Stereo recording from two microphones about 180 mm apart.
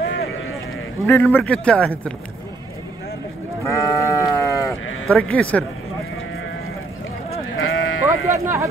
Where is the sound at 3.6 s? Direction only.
15° left (ahead or behind).